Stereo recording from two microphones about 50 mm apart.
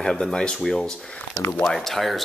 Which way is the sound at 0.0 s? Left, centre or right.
Centre.